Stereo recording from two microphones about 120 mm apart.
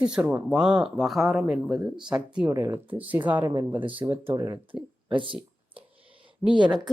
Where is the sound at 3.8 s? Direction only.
45° right (ahead or behind).